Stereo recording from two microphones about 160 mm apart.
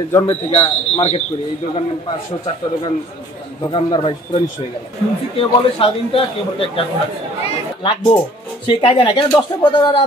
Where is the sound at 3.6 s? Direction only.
30° left (ahead or behind).